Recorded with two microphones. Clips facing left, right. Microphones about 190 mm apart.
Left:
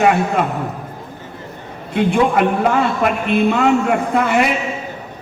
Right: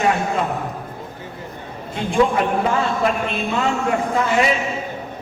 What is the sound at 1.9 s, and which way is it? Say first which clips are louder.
A man's voice: left 3 dB; 65° left (ahead or behind).